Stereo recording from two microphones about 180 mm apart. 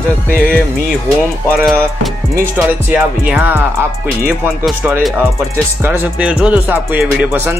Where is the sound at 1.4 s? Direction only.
Centre (ahead or behind).